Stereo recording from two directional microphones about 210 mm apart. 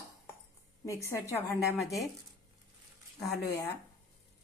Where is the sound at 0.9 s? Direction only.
15° left (ahead or behind).